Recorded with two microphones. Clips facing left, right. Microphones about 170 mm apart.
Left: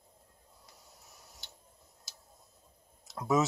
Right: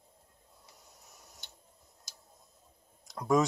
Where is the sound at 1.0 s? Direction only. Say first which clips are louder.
Even; centre (ahead or behind).